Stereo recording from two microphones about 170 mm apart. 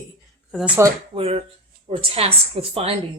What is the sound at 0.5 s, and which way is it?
Speech, 5° right (ahead or behind).